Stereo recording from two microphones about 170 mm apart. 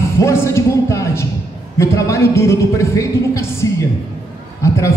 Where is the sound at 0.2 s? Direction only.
15° left (ahead or behind).